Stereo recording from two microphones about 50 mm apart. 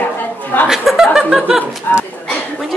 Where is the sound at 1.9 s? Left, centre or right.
Left.